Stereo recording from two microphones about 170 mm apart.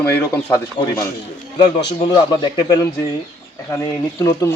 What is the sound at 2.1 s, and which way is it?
Speech, 25° left (ahead or behind).